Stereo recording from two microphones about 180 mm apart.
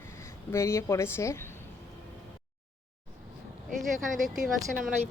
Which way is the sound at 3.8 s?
Centre (ahead or behind).